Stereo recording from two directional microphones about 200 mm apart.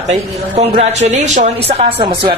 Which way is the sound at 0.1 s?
35° right (ahead or behind).